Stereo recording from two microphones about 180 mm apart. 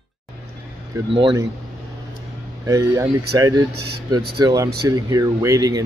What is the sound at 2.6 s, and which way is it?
Speech, 15° right (ahead or behind).